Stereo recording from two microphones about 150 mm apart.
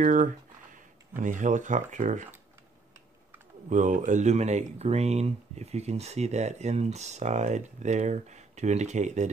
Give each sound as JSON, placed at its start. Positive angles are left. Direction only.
{"t": 0.0, "sound": "speech", "side_deg": -60}
{"t": 3.7, "sound": "speech", "side_deg": -60}